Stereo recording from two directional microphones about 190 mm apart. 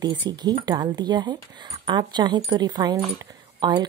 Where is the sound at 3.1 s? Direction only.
25° right (ahead or behind).